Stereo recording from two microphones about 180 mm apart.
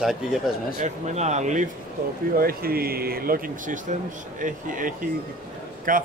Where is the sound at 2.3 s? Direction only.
55° right (ahead or behind).